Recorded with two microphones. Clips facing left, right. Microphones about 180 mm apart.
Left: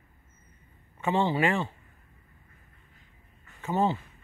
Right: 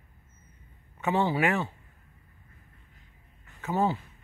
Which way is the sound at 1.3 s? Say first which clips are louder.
Even; 10° right (ahead or behind).